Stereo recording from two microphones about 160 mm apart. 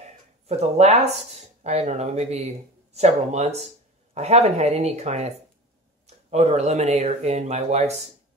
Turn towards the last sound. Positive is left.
turn(degrees=-45)  # may be behind; listen again after turning